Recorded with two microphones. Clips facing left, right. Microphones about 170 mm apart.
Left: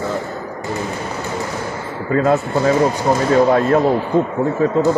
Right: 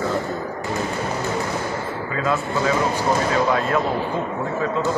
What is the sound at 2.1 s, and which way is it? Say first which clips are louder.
Speech: left 8 dB; 45° left (ahead or behind).